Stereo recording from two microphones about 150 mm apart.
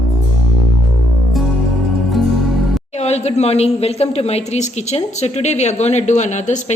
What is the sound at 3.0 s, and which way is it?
A woman's voice, 45° left (ahead or behind).